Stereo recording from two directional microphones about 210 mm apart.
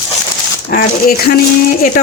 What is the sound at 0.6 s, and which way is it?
Speech, 45° left (ahead or behind).